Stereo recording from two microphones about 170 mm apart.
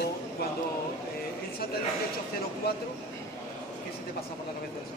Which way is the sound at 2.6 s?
70° left (ahead or behind).